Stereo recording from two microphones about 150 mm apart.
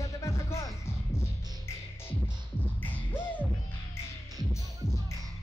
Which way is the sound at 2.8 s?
10° left (ahead or behind).